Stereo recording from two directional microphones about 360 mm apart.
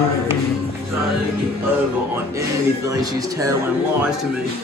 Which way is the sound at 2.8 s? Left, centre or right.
Centre.